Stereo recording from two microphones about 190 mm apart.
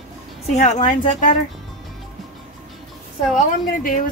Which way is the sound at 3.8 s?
45° left (ahead or behind).